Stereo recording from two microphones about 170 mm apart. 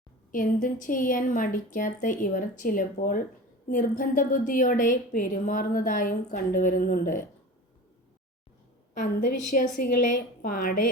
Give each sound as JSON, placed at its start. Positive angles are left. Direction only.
{"t": 0.3, "sound": "a woman's voice", "side_deg": 50}
{"t": 9.5, "sound": "a woman's voice", "side_deg": 50}